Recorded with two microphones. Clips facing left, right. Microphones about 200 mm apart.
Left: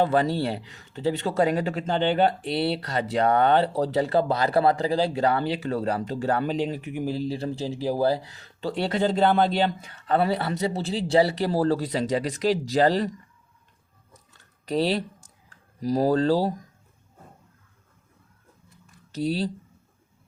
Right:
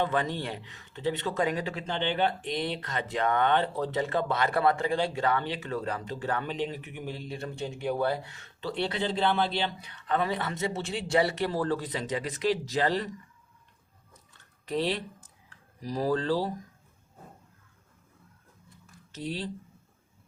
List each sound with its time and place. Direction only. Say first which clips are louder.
0.0 s speech: left 7 dB; 40° left (ahead or behind)
14.7 s speech: left 5 dB; 40° left (ahead or behind)
19.1 s speech: left 9 dB; 40° left (ahead or behind)